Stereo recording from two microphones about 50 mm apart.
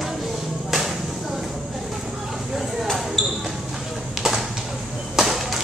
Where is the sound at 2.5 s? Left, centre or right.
Centre.